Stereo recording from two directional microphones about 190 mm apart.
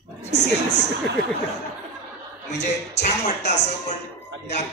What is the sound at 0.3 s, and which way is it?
Speech, 65° left (ahead or behind).